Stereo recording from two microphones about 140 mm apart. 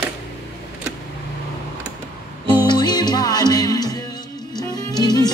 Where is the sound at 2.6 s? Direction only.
30° left (ahead or behind).